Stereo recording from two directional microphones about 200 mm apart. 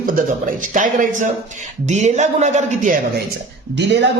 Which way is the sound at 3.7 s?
60° right (ahead or behind).